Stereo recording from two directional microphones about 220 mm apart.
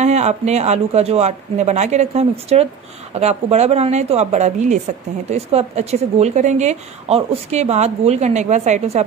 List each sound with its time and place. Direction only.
0.0 s a woman's voice: 30° right (ahead or behind)